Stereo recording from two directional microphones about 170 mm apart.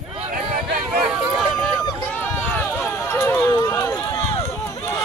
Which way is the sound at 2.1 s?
10° left (ahead or behind).